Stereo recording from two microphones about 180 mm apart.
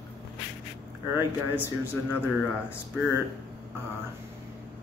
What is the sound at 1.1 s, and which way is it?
Speech, 10° right (ahead or behind).